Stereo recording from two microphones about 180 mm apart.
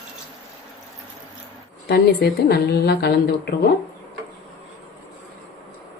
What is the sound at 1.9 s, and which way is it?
A woman's voice, 65° left (ahead or behind).